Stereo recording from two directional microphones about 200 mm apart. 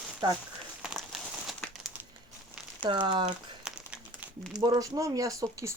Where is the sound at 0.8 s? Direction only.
5° right (ahead or behind).